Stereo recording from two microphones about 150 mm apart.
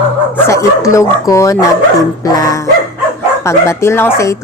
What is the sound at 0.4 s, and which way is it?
Speech, 20° left (ahead or behind).